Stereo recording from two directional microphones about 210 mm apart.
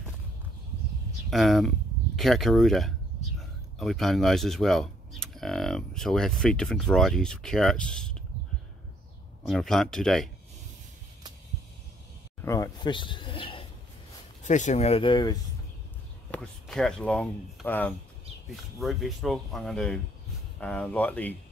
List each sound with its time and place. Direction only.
1.3 s speech: centre (ahead or behind)
9.5 s speech: centre (ahead or behind)
12.4 s speech: 10° left (ahead or behind)
14.4 s speech: 35° left (ahead or behind)
16.3 s speech: 5° left (ahead or behind)